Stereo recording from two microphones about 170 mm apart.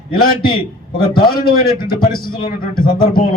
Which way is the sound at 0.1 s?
60° left (ahead or behind).